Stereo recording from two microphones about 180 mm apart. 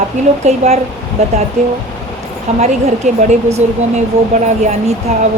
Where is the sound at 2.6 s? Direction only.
40° right (ahead or behind).